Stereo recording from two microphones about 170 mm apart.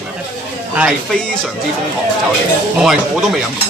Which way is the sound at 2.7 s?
Centre (ahead or behind).